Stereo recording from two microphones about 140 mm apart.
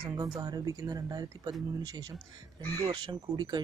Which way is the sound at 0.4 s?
25° right (ahead or behind).